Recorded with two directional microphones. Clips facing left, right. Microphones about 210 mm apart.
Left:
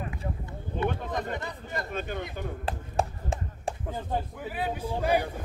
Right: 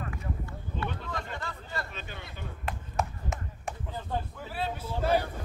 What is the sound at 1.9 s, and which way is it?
Speech, 50° left (ahead or behind).